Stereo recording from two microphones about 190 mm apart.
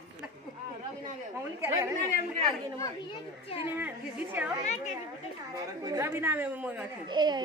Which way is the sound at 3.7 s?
10° right (ahead or behind).